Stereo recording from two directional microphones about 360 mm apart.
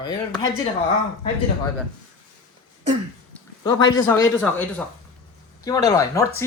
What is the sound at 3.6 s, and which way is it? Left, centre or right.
Speech, centre.